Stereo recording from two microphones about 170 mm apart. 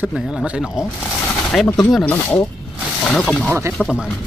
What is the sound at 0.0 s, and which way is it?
Speech, 5° right (ahead or behind).